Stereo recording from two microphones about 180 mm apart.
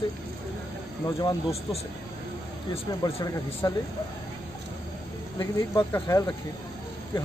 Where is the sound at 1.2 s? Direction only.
35° left (ahead or behind).